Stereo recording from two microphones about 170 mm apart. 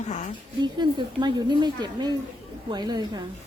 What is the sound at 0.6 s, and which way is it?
A woman's voice, 25° right (ahead or behind).